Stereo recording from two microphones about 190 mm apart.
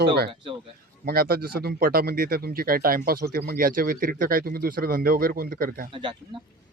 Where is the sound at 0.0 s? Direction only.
60° right (ahead or behind).